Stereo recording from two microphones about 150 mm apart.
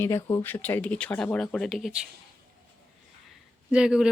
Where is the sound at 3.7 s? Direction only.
5° right (ahead or behind).